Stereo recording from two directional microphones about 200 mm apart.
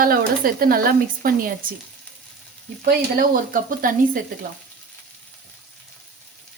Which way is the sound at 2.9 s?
50° right (ahead or behind).